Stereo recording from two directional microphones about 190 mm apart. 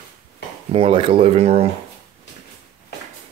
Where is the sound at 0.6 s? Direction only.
30° right (ahead or behind).